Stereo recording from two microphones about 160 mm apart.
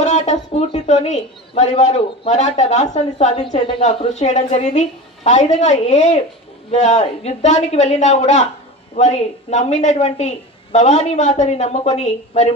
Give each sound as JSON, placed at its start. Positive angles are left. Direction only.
{"t": 0.0, "sound": "speech", "side_deg": 45}